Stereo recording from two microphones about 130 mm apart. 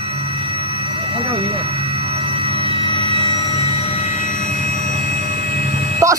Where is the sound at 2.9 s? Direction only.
40° left (ahead or behind); by 5.7 s 90° left.